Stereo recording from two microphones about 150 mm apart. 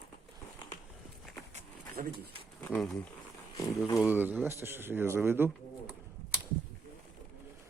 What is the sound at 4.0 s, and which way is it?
Speech, 10° right (ahead or behind).